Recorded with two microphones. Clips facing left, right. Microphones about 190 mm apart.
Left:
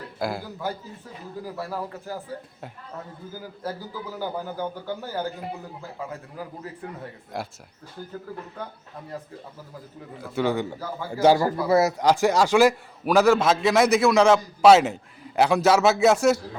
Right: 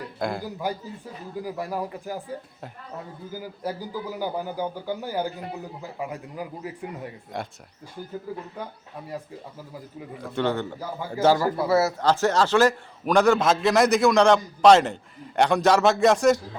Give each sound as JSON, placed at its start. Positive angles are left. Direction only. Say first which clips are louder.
{"t": 0.2, "sound": "a man's voice", "louder": "even", "side_deg": 5}
{"t": 0.6, "sound": "a man's voice", "louder": "right 1 dB", "side_deg": -15}
{"t": 3.6, "sound": "a man's voice", "louder": "right 2 dB", "side_deg": -15}
{"t": 7.3, "sound": "a man's voice", "louder": "left 1 dB", "side_deg": 0}
{"t": 10.2, "sound": "a man's voice", "louder": "left 1 dB", "side_deg": 5}